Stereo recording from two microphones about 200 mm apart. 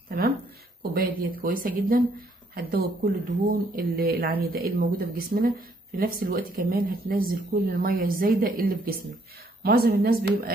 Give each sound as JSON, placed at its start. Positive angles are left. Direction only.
{"t": 0.9, "sound": "speech", "side_deg": -45}